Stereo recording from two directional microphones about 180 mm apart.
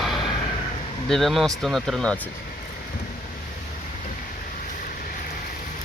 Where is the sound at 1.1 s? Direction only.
Centre (ahead or behind).